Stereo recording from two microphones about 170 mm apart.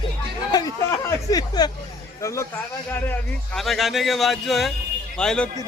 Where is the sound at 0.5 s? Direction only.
20° left (ahead or behind).